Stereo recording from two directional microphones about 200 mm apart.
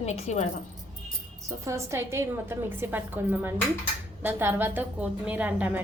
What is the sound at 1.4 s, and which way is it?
A woman's voice, 15° right (ahead or behind).